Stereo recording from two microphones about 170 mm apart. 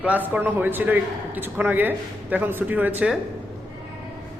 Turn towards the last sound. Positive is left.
turn(degrees=-10)  # may be behind; listen again after turning